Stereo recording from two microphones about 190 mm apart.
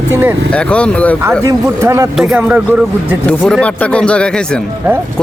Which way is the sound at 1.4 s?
15° right (ahead or behind).